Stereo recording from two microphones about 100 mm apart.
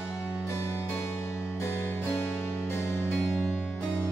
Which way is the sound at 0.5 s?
25° left (ahead or behind).